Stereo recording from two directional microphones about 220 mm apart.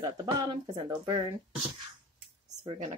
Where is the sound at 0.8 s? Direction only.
15° right (ahead or behind).